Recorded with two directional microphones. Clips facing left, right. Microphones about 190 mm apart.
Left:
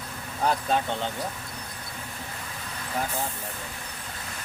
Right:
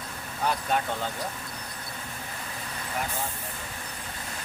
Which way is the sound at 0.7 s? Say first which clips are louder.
Left 2 dB; 25° left (ahead or behind).